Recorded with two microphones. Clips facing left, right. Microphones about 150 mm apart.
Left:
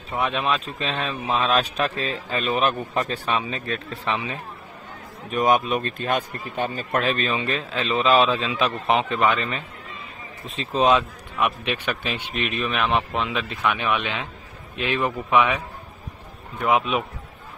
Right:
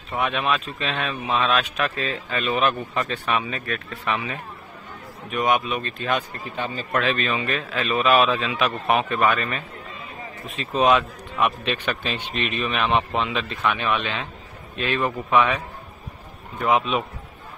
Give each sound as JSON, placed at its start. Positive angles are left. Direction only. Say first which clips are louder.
{"t": 0.2, "sound": "a man's voice", "louder": "even", "side_deg": 30}
{"t": 1.0, "sound": "speech", "louder": "right 1 dB", "side_deg": 0}
{"t": 1.5, "sound": "a man's voice", "louder": "left 1 dB", "side_deg": 35}
{"t": 10.4, "sound": "speech", "louder": "left 2 dB", "side_deg": 30}
{"t": 11.0, "sound": "a man's voice", "louder": "right 1 dB", "side_deg": 5}
{"t": 16.6, "sound": "a man's voice", "louder": "even", "side_deg": 10}